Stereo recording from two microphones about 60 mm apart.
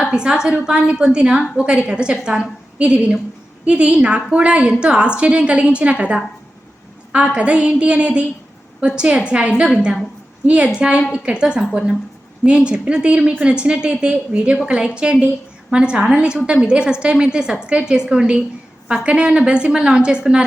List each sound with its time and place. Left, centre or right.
0.0 s a woman's voice: centre
7.3 s a woman's voice: centre